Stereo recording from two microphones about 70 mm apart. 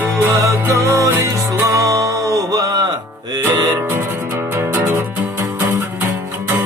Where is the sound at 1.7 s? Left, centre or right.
Right.